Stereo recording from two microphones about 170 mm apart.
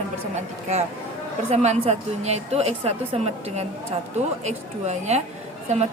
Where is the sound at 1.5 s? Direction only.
40° right (ahead or behind).